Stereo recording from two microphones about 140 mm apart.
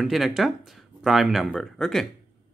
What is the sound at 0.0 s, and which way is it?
Speech, centre (ahead or behind).